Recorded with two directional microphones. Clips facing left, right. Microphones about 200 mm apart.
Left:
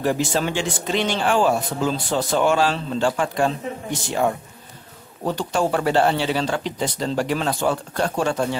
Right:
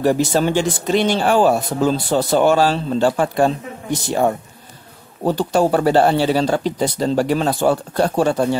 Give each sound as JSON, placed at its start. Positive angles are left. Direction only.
{"t": 0.0, "sound": "speech", "side_deg": -40}